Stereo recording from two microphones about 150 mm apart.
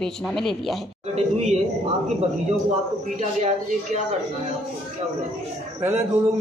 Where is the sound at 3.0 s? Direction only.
50° right (ahead or behind).